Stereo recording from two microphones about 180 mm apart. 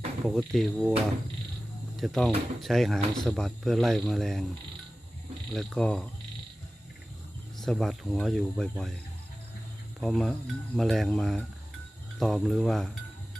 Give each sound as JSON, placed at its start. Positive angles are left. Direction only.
{"t": 0.3, "sound": "speech", "side_deg": 0}
{"t": 2.0, "sound": "speech", "side_deg": 0}
{"t": 5.5, "sound": "speech", "side_deg": 5}
{"t": 7.6, "sound": "speech", "side_deg": 0}
{"t": 10.0, "sound": "speech", "side_deg": 0}